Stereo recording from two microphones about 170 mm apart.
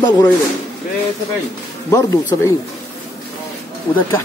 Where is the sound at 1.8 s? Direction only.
15° left (ahead or behind).